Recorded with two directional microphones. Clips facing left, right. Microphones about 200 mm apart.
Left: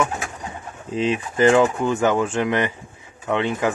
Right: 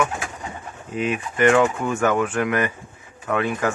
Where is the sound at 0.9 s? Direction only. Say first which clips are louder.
Left 2 dB; 30° left (ahead or behind).